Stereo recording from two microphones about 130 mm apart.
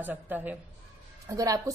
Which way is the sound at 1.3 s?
25° right (ahead or behind).